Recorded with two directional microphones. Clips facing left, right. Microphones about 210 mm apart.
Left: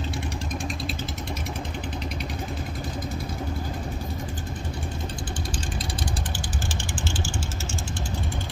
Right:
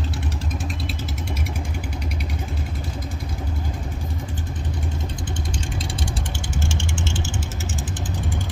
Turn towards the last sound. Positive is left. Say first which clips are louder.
# right 3 dB
turn(degrees=-25)  # may be behind; listen again after turning